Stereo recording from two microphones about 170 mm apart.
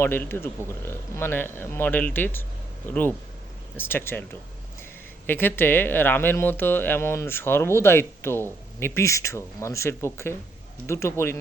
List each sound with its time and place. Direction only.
0.0 s speech: 10° left (ahead or behind)